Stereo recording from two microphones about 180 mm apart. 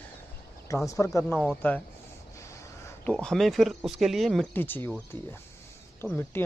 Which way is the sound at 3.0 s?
5° left (ahead or behind).